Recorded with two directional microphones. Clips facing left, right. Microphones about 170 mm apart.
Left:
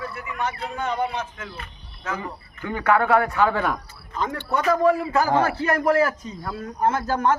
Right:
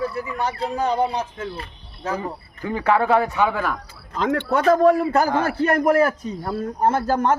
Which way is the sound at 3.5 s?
5° right (ahead or behind).